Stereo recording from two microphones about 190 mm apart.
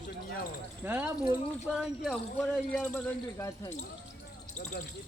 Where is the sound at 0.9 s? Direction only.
10° right (ahead or behind); by 3.7 s 15° left (ahead or behind).